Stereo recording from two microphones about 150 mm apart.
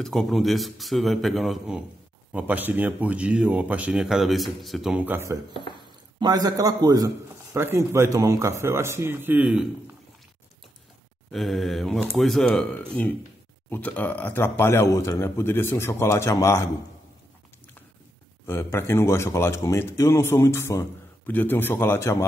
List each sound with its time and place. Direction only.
0.0 s speech: centre (ahead or behind); by 5.4 s 15° right (ahead or behind)
6.1 s a man's voice: 25° right (ahead or behind); by 9.7 s 10° right (ahead or behind)
11.3 s speech: centre (ahead or behind)
13.7 s speech: 10° left (ahead or behind)
18.5 s speech: 15° left (ahead or behind)